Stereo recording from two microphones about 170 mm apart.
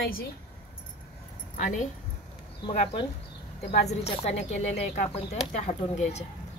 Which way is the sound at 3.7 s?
40° left (ahead or behind).